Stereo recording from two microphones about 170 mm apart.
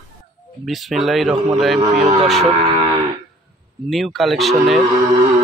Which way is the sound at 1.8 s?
40° right (ahead or behind).